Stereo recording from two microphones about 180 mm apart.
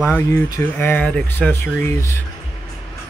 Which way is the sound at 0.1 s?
10° left (ahead or behind).